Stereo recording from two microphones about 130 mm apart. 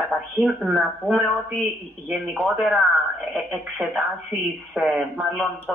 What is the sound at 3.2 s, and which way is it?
Speech, 5° right (ahead or behind).